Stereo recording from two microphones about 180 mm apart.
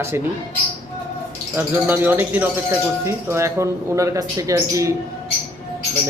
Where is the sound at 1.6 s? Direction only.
10° right (ahead or behind).